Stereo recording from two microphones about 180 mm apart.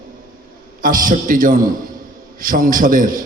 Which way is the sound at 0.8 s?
50° right (ahead or behind).